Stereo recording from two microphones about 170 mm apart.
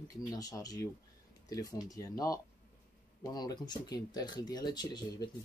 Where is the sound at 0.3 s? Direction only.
20° left (ahead or behind).